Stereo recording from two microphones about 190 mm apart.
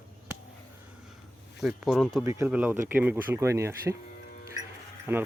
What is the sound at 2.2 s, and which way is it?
Speech, 15° right (ahead or behind).